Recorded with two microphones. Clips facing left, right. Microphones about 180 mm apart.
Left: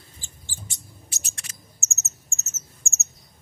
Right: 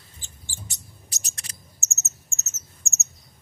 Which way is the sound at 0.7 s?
40° right (ahead or behind).